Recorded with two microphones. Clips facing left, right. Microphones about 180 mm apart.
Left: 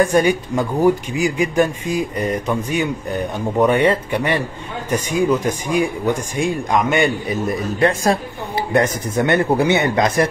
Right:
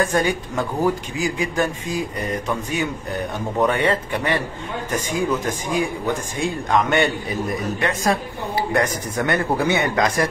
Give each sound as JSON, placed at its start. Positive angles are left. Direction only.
{"t": 0.0, "sound": "speech", "side_deg": 15}
{"t": 7.8, "sound": "speech", "side_deg": 30}